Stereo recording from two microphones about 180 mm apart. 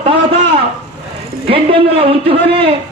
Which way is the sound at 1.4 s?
30° right (ahead or behind).